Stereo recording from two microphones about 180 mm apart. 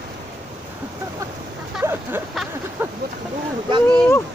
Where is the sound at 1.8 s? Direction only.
10° right (ahead or behind).